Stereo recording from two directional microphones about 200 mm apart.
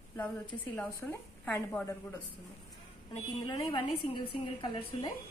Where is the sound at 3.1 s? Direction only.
20° left (ahead or behind).